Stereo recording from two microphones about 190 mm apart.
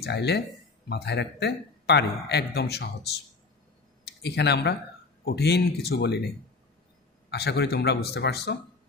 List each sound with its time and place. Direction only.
0.0 s a man's voice: 60° left (ahead or behind)
4.0 s a man's voice: 60° left (ahead or behind)